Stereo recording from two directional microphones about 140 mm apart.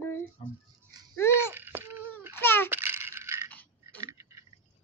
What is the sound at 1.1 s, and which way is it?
Babbling, 20° left (ahead or behind).